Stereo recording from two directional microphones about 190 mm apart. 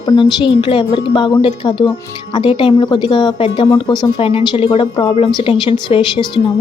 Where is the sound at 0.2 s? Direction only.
25° left (ahead or behind).